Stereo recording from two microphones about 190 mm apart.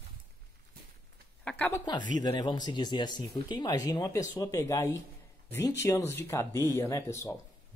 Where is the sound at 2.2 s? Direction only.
20° left (ahead or behind).